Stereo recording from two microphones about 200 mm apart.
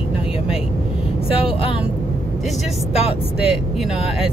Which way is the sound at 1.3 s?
30° left (ahead or behind).